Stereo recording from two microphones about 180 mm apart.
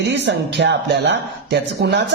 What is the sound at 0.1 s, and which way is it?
Speech, 70° right (ahead or behind).